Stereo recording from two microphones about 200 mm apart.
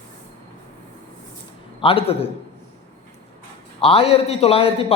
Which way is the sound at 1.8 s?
30° left (ahead or behind).